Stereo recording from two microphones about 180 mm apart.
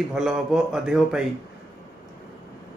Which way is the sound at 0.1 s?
Centre (ahead or behind).